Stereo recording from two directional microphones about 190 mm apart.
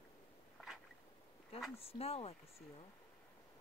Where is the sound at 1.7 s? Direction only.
30° left (ahead or behind).